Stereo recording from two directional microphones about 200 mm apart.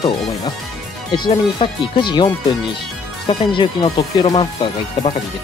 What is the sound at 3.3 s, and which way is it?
Speech, 25° left (ahead or behind).